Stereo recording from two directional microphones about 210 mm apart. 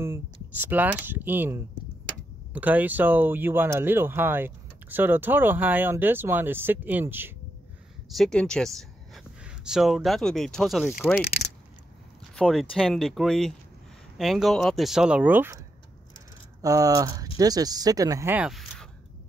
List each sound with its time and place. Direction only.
0.0 s speech: 10° right (ahead or behind)
8.1 s speech: centre (ahead or behind)
12.4 s speech: centre (ahead or behind)
16.6 s speech: 15° right (ahead or behind); by 18.9 s centre (ahead or behind)